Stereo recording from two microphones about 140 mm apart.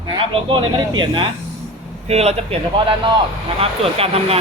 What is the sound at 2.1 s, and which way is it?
Speech, 50° right (ahead or behind).